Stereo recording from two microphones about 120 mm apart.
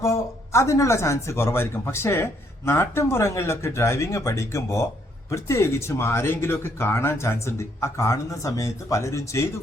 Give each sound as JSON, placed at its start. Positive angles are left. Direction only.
{"t": 0.0, "sound": "speech", "side_deg": 25}